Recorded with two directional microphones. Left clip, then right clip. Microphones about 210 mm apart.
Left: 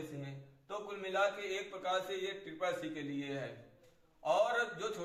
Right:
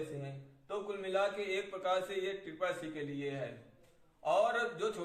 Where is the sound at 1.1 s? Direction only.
25° right (ahead or behind).